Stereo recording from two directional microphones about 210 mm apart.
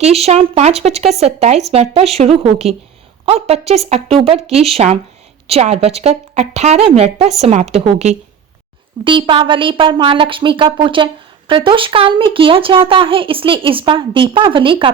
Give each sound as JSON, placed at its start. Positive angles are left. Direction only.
{"t": 0.0, "sound": "speech", "side_deg": -30}